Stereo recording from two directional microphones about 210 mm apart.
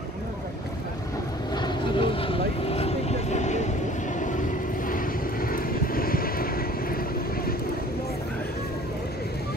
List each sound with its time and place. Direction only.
1.5 s vehicle: 20° left (ahead or behind)
4.8 s vehicle: 40° left (ahead or behind)